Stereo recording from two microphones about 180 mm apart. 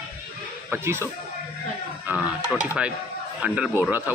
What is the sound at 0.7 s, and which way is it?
Speech, 10° right (ahead or behind).